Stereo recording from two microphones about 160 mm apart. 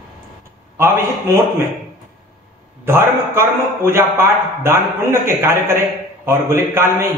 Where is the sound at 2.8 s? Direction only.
15° right (ahead or behind).